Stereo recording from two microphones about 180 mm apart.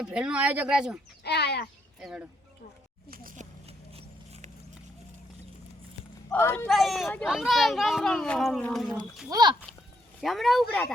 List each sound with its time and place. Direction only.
0.0 s speech: 5° right (ahead or behind)
1.2 s speech: 65° left (ahead or behind)
2.0 s speech: 5° right (ahead or behind)
3.1 s a sound: 50° right (ahead or behind)
3.7 s a sound: 35° right (ahead or behind)
6.3 s speech: 10° left (ahead or behind)
9.3 s speech: 25° right (ahead or behind)
10.2 s speech: centre (ahead or behind)